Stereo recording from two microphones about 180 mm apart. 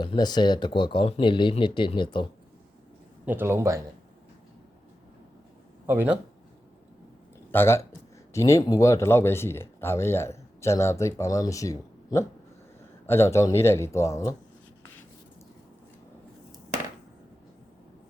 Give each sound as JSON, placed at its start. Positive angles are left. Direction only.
{"t": 0.0, "sound": "speech", "side_deg": 25}
{"t": 3.2, "sound": "a man's voice", "side_deg": -10}
{"t": 5.8, "sound": "speech", "side_deg": -10}
{"t": 7.5, "sound": "speech", "side_deg": 15}